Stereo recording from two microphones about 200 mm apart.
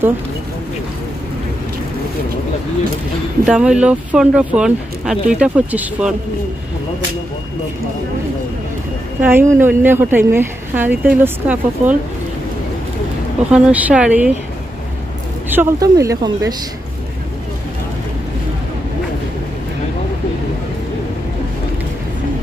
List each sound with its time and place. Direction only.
3.4 s speech: 5° right (ahead or behind)
9.2 s speech: 10° right (ahead or behind)
13.5 s speech: 5° right (ahead or behind)
15.5 s speech: 15° right (ahead or behind)